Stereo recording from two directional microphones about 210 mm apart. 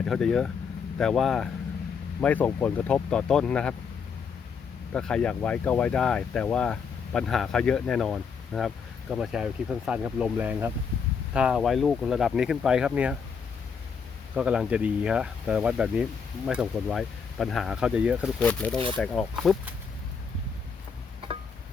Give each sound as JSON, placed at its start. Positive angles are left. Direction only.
{"t": 0.0, "sound": "speech", "side_deg": 5}
{"t": 4.9, "sound": "speech", "side_deg": 5}
{"t": 14.3, "sound": "speech", "side_deg": -5}
{"t": 18.3, "sound": "speech", "side_deg": 5}